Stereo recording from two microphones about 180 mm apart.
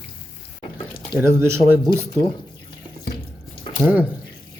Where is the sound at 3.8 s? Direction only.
10° right (ahead or behind).